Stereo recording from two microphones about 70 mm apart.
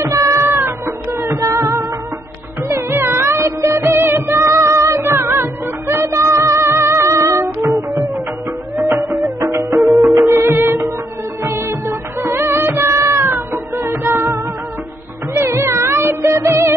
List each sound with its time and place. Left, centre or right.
0.2 s music: right
2.7 s music: right
8.7 s music: right
9.5 s music: right
11.4 s music of bollywood: right
15.3 s music: right